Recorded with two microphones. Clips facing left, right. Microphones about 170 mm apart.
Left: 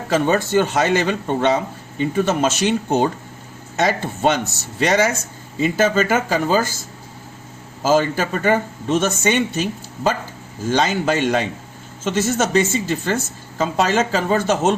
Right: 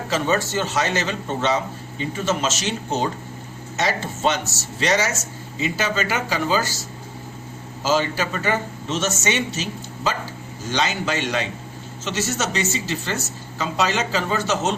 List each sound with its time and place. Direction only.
0.1 s a man's voice: 55° left (ahead or behind)